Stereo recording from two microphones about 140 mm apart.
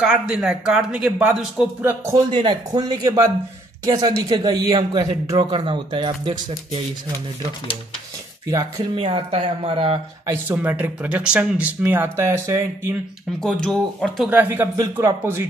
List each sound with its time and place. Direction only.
0.0 s speech: 5° right (ahead or behind)
1.9 s speech: 20° right (ahead or behind)
2.3 s speech: 30° right (ahead or behind)
8.5 s speech: 20° right (ahead or behind)
8.9 s speech: 45° right (ahead or behind)
10.2 s speech: 15° right (ahead or behind)
13.4 s speech: 5° left (ahead or behind)
14.3 s speech: 15° right (ahead or behind)